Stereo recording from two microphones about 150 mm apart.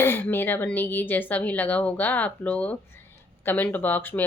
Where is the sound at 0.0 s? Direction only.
15° left (ahead or behind).